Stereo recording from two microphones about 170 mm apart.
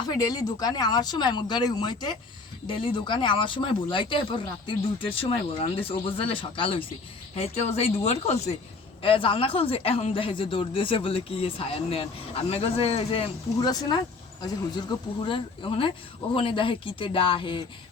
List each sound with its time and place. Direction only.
0.1 s a man's voice: 20° left (ahead or behind)
13.7 s speech: 25° left (ahead or behind)
15.3 s a man's voice: 30° left (ahead or behind)